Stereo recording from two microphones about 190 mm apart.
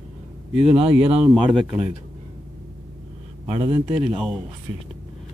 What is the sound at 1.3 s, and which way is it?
Speech, centre (ahead or behind).